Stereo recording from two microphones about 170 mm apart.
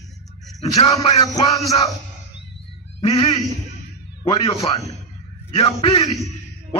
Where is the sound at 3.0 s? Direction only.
35° left (ahead or behind).